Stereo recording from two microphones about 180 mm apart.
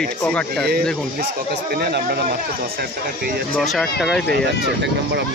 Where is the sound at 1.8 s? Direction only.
65° right (ahead or behind).